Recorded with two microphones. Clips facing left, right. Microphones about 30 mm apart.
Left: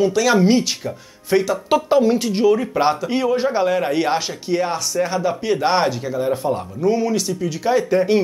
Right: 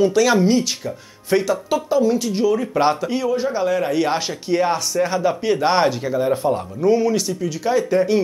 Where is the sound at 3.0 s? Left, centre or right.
Left.